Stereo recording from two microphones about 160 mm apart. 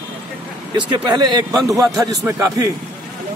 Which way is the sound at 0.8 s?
30° right (ahead or behind).